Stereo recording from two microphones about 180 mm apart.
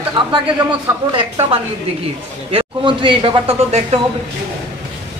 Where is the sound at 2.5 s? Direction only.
30° right (ahead or behind).